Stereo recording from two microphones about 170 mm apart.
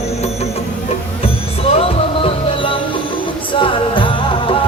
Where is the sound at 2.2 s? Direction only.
35° left (ahead or behind).